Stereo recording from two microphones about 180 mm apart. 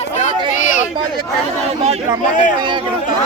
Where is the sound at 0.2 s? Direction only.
45° left (ahead or behind).